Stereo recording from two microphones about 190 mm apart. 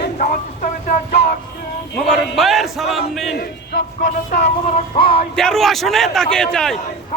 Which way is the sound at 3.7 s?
50° left (ahead or behind).